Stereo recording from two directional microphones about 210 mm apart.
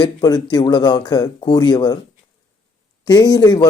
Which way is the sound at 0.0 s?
20° left (ahead or behind).